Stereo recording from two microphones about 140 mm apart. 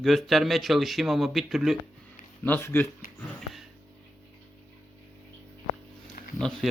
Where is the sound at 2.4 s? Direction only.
15° left (ahead or behind).